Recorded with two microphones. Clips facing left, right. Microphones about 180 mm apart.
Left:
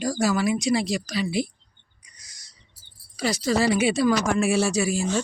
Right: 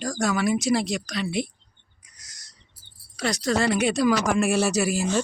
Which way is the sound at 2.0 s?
Centre (ahead or behind).